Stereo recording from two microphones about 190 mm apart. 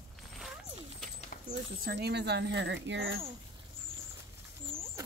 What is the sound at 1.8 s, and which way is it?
Speech, 60° right (ahead or behind).